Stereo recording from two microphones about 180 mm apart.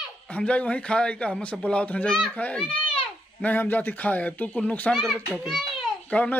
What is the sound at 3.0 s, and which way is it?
Speech, 10° left (ahead or behind).